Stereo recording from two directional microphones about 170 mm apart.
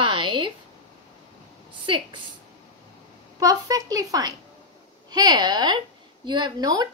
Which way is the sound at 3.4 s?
20° right (ahead or behind).